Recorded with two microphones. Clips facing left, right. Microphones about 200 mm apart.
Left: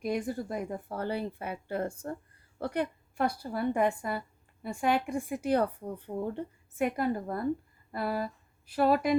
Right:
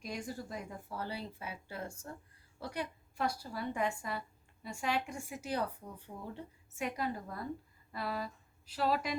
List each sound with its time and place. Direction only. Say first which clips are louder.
0.0 s a woman's voice: left 10 dB; 55° left (ahead or behind)